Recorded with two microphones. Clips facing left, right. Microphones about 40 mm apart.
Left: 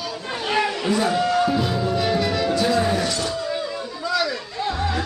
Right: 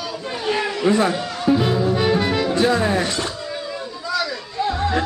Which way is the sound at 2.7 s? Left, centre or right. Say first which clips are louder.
Right 1 dB; right.